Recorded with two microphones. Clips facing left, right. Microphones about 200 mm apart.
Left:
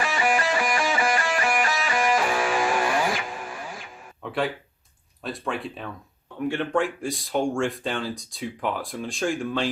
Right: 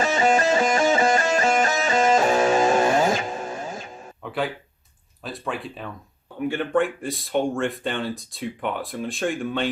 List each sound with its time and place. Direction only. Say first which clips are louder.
0.0 s music: right 5 dB; 25° right (ahead or behind)
4.2 s a sound: even; centre (ahead or behind)
5.2 s speech: left 1 dB; centre (ahead or behind)